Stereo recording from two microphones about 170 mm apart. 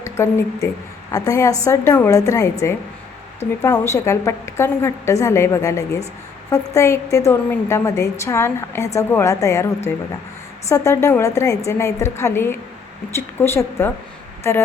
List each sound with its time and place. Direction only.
0.0 s a woman's voice: 15° left (ahead or behind)